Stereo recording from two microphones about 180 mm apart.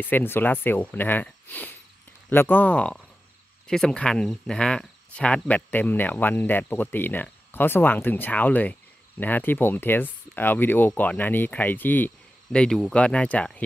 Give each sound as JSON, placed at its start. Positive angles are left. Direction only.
{"t": 0.0, "sound": "speech", "side_deg": 10}